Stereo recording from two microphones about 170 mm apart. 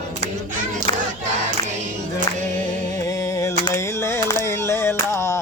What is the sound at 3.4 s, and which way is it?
Music, 20° left (ahead or behind).